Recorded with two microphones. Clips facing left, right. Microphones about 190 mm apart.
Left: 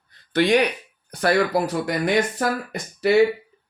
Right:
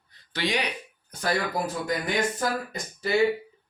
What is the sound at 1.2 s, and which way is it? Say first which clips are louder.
Speech: left 7 dB; 75° left (ahead or behind).